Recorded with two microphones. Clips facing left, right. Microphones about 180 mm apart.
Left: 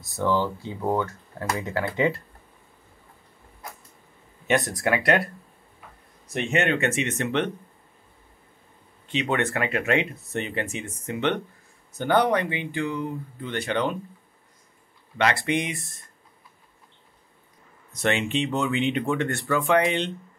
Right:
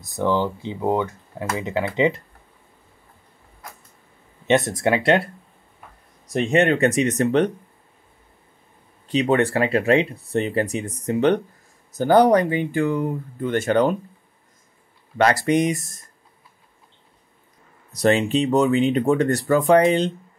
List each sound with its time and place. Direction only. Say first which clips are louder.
0.0 s speech: right 3 dB; 20° right (ahead or behind)
4.5 s speech: right 5 dB; 20° right (ahead or behind)
6.3 s speech: right 6 dB; 35° right (ahead or behind)
9.0 s speech: right 7 dB; 35° right (ahead or behind)
15.1 s speech: right 6 dB; 40° right (ahead or behind)
17.9 s speech: right 6 dB; 35° right (ahead or behind)